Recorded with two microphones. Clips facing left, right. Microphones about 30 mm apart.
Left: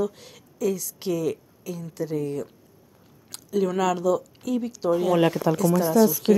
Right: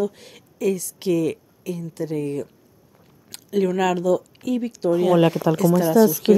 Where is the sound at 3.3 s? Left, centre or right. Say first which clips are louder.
Right 3 dB; right.